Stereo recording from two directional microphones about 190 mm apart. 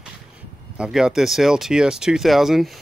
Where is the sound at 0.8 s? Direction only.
5° right (ahead or behind).